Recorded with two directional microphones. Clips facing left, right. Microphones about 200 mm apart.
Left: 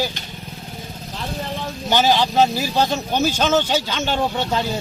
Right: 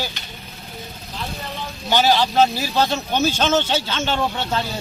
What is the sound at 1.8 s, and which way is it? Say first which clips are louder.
A man's voice: even; 15° left (ahead or behind).